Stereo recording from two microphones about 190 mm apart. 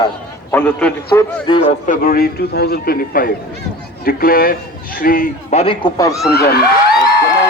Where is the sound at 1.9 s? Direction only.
50° left (ahead or behind); by 6.1 s 20° left (ahead or behind).